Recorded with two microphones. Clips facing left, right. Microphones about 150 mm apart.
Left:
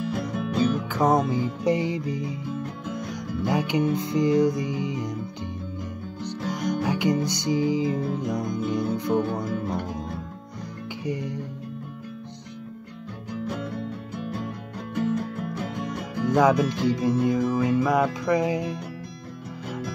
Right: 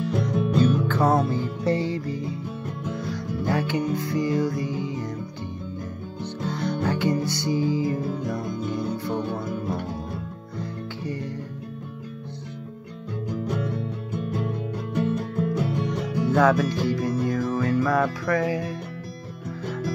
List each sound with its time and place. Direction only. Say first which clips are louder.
0.0 s music: right 3 dB; 5° left (ahead or behind)
6.2 s music: even; 15° left (ahead or behind)
11.1 s music: left 3 dB; 15° left (ahead or behind)
16.3 s music: left 1 dB; 15° left (ahead or behind)